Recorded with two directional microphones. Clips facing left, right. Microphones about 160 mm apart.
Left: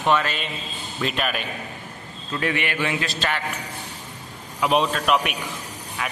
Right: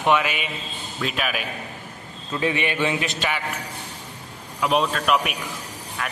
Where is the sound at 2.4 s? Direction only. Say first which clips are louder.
Right 2 dB; 20° right (ahead or behind).